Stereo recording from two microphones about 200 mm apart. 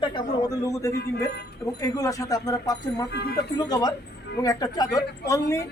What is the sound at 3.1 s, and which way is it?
Speech, 55° left (ahead or behind).